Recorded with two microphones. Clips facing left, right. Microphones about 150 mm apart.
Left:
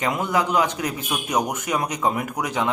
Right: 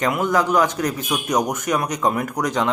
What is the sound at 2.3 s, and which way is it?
Speech, 10° left (ahead or behind).